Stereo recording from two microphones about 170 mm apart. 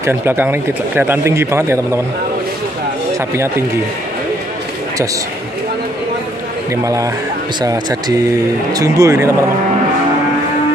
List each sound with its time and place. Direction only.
0.0 s speech: 15° right (ahead or behind)
6.7 s speech: 20° right (ahead or behind)